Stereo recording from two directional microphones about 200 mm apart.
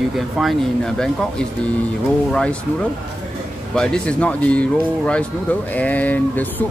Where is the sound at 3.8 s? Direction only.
5° left (ahead or behind).